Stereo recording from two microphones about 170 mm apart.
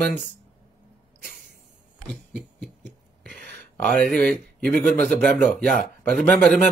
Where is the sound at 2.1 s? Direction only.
5° left (ahead or behind).